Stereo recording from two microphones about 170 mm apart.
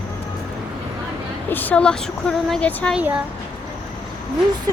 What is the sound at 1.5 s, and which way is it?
Speech, 10° left (ahead or behind).